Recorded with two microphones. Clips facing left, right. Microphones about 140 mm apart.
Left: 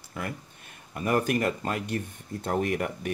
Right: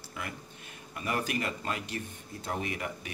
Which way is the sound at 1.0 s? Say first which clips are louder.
Left 7 dB; 50° left (ahead or behind).